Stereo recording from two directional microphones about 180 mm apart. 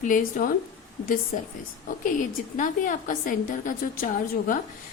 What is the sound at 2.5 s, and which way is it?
A woman's voice, 45° left (ahead or behind).